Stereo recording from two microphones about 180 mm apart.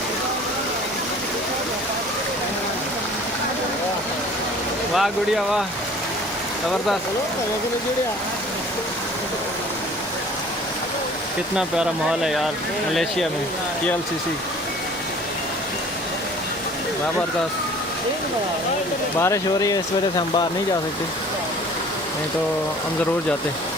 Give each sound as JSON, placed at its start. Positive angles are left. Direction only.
{"t": 4.9, "sound": "speech", "side_deg": 0}
{"t": 11.5, "sound": "speech", "side_deg": -5}
{"t": 19.2, "sound": "speech", "side_deg": 20}